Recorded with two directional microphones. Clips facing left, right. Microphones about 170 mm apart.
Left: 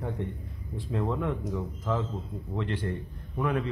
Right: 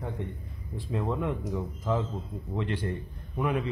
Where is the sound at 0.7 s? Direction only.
5° right (ahead or behind).